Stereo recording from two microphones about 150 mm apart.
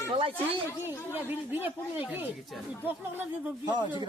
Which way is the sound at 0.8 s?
15° right (ahead or behind).